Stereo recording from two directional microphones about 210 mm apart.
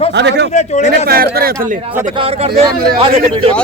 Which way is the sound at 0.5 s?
35° left (ahead or behind).